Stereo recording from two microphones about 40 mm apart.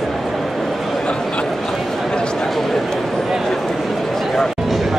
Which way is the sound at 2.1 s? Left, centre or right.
Left.